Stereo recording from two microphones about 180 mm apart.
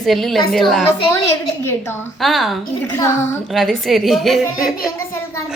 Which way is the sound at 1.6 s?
15° left (ahead or behind).